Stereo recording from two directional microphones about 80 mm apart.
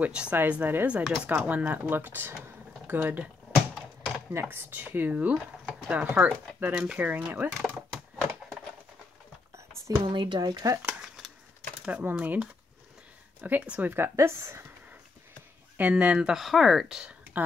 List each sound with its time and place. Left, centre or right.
0.0 s speech: centre
2.4 s a sound: right
4.3 s speech: right
10.0 s speech: right
11.0 s a sound: centre
11.8 s speech: centre; by 14.6 s right
15.8 s speech: centre
16.3 s speech: centre